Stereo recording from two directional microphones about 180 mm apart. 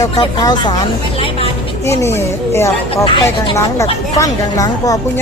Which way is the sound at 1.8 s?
15° left (ahead or behind).